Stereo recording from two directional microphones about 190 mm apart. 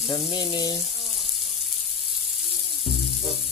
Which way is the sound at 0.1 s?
25° left (ahead or behind).